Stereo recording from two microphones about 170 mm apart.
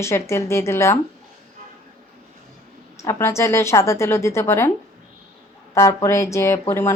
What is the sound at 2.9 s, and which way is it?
Speech, 15° left (ahead or behind).